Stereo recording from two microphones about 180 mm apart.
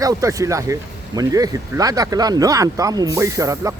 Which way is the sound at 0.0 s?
20° right (ahead or behind).